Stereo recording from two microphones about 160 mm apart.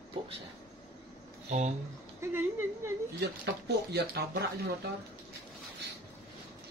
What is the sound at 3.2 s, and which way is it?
Speech, 90° right.